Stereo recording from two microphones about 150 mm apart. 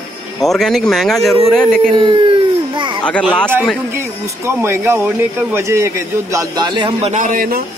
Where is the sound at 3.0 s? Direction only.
10° left (ahead or behind).